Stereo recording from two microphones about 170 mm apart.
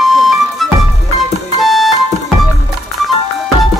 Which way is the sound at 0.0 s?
Centre (ahead or behind).